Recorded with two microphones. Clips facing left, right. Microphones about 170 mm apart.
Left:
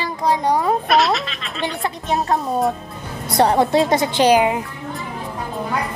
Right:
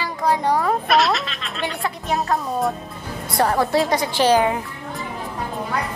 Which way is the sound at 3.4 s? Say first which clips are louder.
Left 3 dB; 20° left (ahead or behind).